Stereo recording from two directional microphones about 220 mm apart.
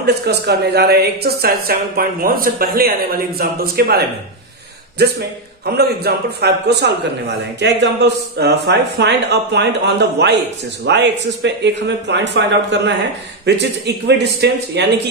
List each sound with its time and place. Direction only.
0.0 s a woman's voice: 50° right (ahead or behind)
5.8 s a woman's voice: 45° right (ahead or behind)